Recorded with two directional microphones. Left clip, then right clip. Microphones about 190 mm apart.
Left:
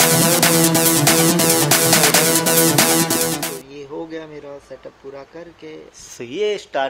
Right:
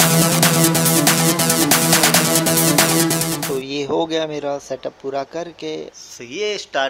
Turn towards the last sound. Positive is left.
turn(degrees=10)  # may be behind; listen again after turning